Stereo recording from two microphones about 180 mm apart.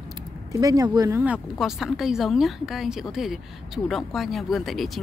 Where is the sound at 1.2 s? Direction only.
5° right (ahead or behind).